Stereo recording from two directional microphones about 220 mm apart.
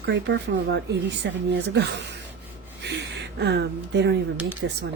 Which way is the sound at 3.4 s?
50° right (ahead or behind).